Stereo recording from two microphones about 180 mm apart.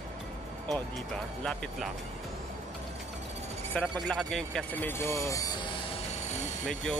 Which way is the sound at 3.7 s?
5° left (ahead or behind).